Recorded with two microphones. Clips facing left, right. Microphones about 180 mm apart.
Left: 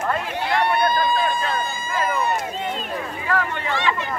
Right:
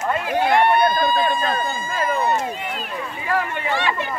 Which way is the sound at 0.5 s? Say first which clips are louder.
Right 3 dB; 55° right (ahead or behind).